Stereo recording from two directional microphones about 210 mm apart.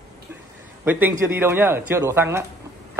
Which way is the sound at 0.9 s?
10° right (ahead or behind).